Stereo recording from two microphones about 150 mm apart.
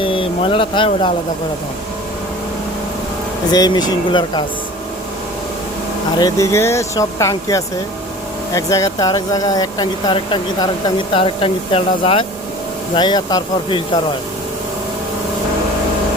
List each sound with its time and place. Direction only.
0.0 s speech: 35° left (ahead or behind)
3.5 s speech: 25° left (ahead or behind)
6.1 s speech: 25° left (ahead or behind)